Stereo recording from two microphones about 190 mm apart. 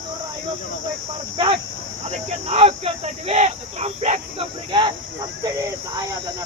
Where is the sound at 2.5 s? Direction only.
35° right (ahead or behind).